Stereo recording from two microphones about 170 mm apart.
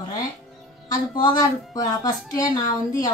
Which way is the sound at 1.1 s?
25° left (ahead or behind).